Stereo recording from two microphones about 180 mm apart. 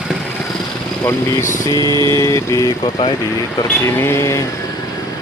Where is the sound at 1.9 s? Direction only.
25° right (ahead or behind).